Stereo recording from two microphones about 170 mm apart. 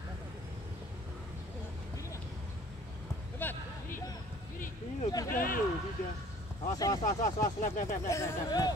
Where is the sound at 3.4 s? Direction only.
10° left (ahead or behind).